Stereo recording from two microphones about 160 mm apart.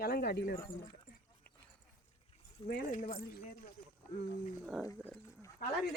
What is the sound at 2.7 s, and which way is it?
Speech, 60° left (ahead or behind).